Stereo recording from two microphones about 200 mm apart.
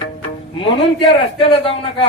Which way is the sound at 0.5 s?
25° left (ahead or behind).